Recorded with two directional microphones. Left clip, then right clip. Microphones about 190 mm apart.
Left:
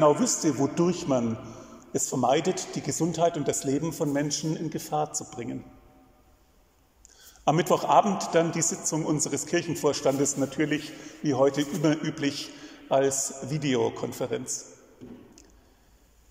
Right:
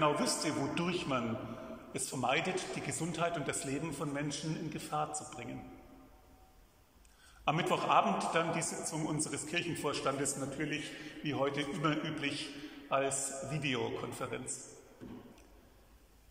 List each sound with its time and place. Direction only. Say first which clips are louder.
0.0 s a man's voice: left 10 dB; 35° left (ahead or behind)
7.4 s a man's voice: left 8 dB; 35° left (ahead or behind)